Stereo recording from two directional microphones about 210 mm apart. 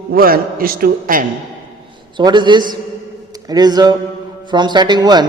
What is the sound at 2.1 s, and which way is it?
A man's voice, 20° right (ahead or behind).